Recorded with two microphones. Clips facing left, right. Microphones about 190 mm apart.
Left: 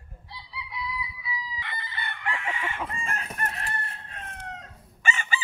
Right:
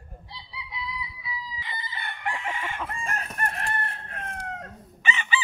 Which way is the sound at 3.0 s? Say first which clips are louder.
Right 2 dB; 45° right (ahead or behind).